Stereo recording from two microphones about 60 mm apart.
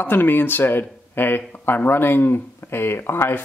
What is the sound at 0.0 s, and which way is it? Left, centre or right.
Speech, left.